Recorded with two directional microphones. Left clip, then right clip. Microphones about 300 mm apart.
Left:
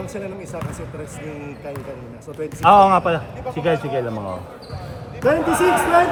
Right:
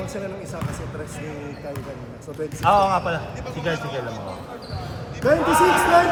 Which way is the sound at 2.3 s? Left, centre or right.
Left.